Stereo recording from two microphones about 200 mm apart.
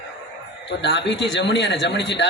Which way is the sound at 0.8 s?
60° left (ahead or behind).